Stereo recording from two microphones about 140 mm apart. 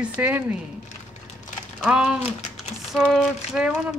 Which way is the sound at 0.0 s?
10° right (ahead or behind).